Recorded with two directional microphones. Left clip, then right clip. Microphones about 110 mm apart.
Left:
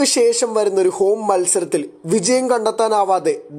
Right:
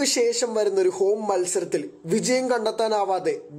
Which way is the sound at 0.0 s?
25° left (ahead or behind).